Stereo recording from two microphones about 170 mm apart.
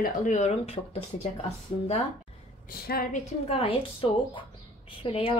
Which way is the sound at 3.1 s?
40° left (ahead or behind).